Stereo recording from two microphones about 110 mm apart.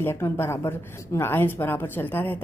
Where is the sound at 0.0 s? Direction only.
20° left (ahead or behind).